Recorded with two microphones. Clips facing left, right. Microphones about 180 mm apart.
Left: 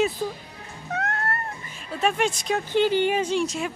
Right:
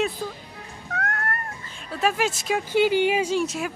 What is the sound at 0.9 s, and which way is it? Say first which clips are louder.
Music: left 2 dB; 25° left (ahead or behind).